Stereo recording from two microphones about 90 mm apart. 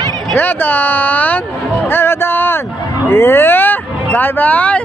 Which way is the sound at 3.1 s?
25° left (ahead or behind).